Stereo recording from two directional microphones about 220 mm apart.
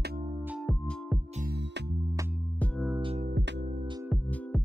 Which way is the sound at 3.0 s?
25° right (ahead or behind).